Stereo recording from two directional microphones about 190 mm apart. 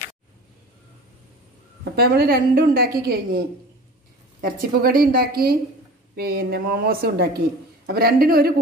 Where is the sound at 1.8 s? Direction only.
55° right (ahead or behind).